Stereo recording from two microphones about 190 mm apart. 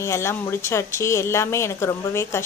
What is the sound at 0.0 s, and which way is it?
Speech, 15° left (ahead or behind).